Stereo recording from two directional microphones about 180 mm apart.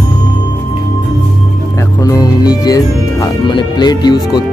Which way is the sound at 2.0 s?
20° left (ahead or behind).